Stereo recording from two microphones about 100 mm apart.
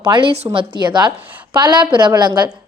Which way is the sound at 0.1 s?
50° right (ahead or behind).